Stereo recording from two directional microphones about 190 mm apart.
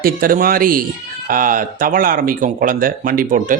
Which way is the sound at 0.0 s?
50° right (ahead or behind).